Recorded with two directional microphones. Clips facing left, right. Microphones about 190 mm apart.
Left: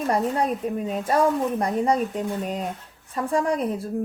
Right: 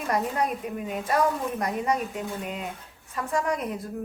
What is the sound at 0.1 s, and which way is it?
Speech, 30° left (ahead or behind).